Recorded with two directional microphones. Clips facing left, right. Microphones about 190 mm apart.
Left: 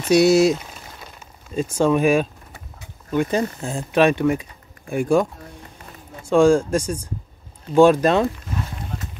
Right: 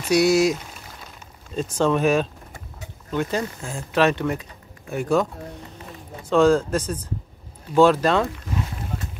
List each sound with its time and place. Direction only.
0.1 s speech: 25° left (ahead or behind)
1.5 s speech: 10° left (ahead or behind)